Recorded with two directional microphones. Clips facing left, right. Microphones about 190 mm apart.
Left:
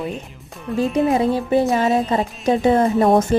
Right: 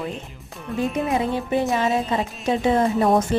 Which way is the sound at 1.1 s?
35° left (ahead or behind).